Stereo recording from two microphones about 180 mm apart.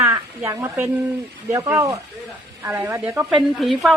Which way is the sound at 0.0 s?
15° right (ahead or behind).